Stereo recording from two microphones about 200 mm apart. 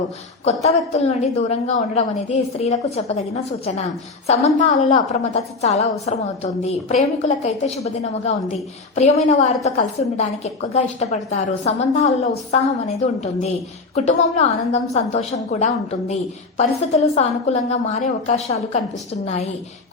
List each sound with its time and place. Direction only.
0.4 s a woman's voice: 30° left (ahead or behind)